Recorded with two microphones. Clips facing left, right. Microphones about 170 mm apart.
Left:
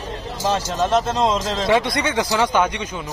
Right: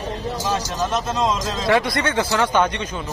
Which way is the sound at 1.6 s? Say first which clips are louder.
Right 1 dB; 20° left (ahead or behind).